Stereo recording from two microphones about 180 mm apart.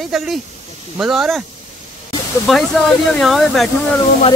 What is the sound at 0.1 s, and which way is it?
Speech, centre (ahead or behind).